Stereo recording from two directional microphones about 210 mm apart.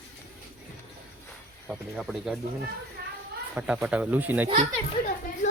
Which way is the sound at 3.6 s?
5° right (ahead or behind).